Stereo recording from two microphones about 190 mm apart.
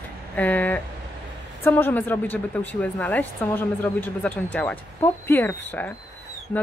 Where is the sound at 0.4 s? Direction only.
10° left (ahead or behind).